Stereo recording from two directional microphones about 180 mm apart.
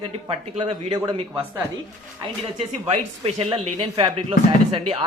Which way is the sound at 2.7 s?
35° right (ahead or behind).